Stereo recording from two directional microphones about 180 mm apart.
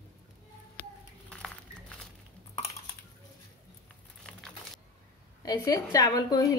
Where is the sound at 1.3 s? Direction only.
5° left (ahead or behind).